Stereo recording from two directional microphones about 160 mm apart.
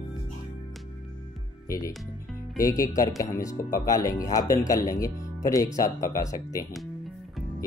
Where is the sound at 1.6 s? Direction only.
20° left (ahead or behind).